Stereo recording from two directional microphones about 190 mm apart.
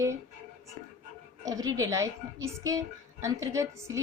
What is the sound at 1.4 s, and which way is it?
A woman's voice, 20° right (ahead or behind).